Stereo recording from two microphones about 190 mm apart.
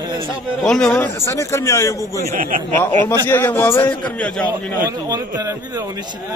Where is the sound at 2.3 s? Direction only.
45° right (ahead or behind).